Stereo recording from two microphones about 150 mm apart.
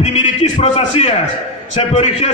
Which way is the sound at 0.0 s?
50° left (ahead or behind).